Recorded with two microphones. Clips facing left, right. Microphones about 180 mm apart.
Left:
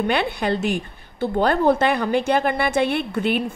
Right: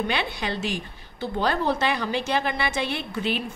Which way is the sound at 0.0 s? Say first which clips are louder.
Left 6 dB; 55° left (ahead or behind).